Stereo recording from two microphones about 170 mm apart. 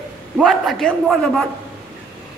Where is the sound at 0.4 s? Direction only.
Centre (ahead or behind).